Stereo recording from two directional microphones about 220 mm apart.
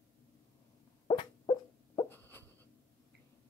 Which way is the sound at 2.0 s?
10° left (ahead or behind).